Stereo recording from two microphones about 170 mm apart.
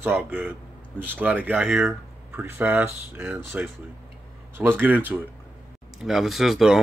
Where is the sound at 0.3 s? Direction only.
10° right (ahead or behind).